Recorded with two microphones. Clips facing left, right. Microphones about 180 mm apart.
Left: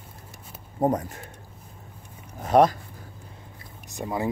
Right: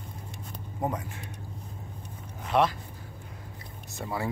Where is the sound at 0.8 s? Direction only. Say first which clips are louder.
Left 8 dB; 40° left (ahead or behind).